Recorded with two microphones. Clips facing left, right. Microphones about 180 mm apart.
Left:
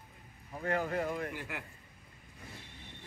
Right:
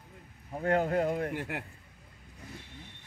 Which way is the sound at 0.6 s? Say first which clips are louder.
Right 6 dB; 55° right (ahead or behind).